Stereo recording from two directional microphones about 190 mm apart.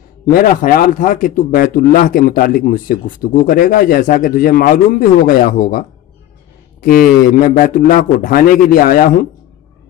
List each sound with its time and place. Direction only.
0.3 s a man's voice: 45° left (ahead or behind)